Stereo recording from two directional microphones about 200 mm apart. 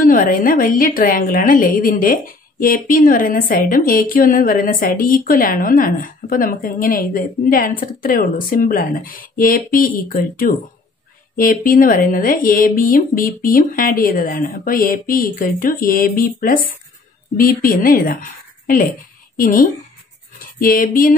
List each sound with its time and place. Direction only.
0.0 s a woman's voice: 40° left (ahead or behind)